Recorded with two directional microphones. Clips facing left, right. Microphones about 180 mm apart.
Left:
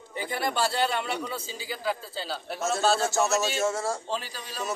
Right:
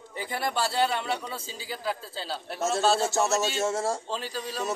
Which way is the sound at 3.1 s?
30° right (ahead or behind).